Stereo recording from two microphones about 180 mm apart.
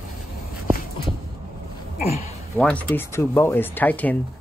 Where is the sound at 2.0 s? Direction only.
40° left (ahead or behind).